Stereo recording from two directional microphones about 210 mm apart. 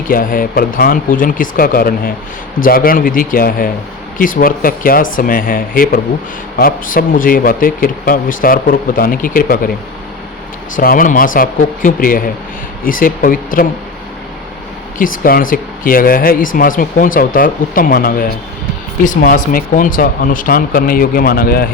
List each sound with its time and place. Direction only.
0.1 s speech: 40° left (ahead or behind)
10.8 s speech: 40° left (ahead or behind)
14.9 s speech: 40° left (ahead or behind)